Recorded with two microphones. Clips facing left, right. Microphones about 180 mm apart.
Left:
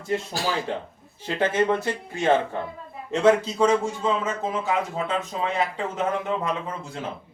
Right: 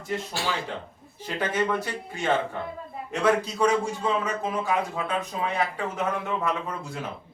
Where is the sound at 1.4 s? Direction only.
25° left (ahead or behind).